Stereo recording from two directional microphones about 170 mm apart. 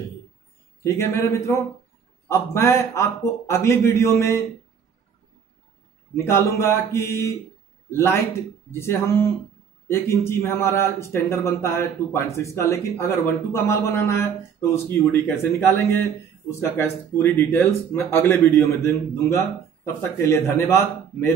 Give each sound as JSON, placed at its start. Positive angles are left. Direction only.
{"t": 0.8, "sound": "speech", "side_deg": 15}
{"t": 6.1, "sound": "speech", "side_deg": 15}